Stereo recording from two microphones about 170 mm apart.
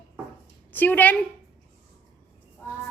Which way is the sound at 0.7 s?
10° left (ahead or behind).